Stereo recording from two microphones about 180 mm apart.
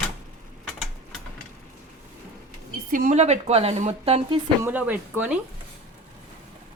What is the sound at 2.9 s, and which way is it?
A woman's voice, 45° right (ahead or behind).